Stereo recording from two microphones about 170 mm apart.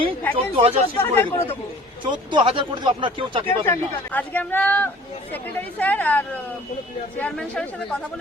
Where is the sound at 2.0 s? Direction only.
30° right (ahead or behind).